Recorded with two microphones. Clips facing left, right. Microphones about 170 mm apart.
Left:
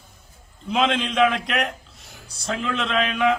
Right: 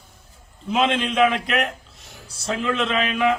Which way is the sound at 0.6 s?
5° right (ahead or behind).